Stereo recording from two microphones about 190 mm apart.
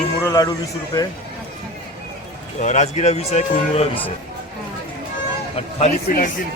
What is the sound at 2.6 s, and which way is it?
Speech, 35° left (ahead or behind).